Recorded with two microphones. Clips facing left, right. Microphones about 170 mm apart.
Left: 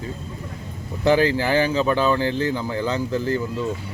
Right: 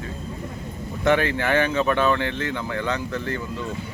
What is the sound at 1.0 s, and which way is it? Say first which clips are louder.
Speech: left 3 dB; 30° left (ahead or behind).